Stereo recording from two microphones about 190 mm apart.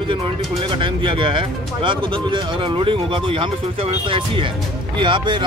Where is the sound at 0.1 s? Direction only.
25° right (ahead or behind).